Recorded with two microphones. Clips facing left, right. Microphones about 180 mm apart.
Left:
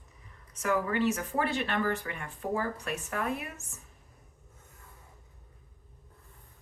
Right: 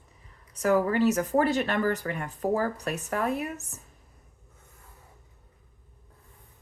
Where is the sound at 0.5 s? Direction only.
35° right (ahead or behind).